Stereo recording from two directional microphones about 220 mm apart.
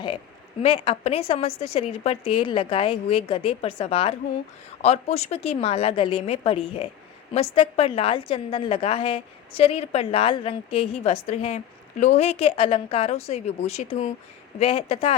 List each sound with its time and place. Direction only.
0.6 s a woman's voice: 25° left (ahead or behind)